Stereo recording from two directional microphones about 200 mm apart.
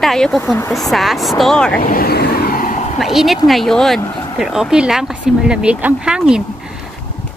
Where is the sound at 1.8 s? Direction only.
50° left (ahead or behind).